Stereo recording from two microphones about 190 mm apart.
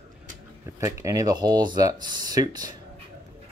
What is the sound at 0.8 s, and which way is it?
Speech, 15° right (ahead or behind).